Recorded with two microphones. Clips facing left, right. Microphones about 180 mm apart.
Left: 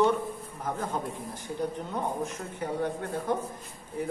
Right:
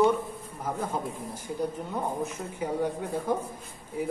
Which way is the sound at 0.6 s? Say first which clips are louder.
Right 1 dB; 10° right (ahead or behind).